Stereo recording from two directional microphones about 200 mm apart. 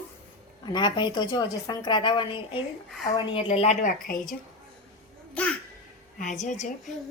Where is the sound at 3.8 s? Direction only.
45° left (ahead or behind).